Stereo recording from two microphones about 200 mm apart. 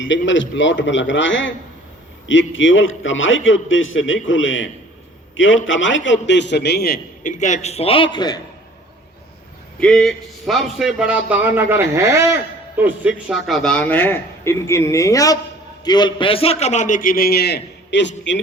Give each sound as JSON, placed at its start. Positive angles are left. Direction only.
{"t": 0.0, "sound": "a man's voice", "side_deg": 70}
{"t": 9.8, "sound": "a man's voice", "side_deg": 0}